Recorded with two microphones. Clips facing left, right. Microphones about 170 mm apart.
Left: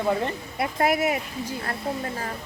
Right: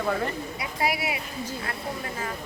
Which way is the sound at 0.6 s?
50° left (ahead or behind).